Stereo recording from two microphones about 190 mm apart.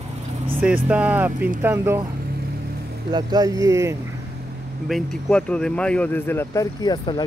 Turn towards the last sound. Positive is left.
turn(degrees=25)  # may be behind; listen again after turning